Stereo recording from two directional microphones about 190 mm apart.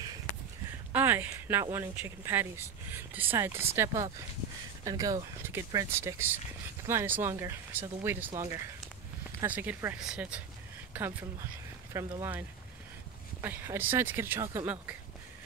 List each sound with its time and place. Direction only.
0.9 s speech: 10° right (ahead or behind)
9.4 s speech: 10° right (ahead or behind)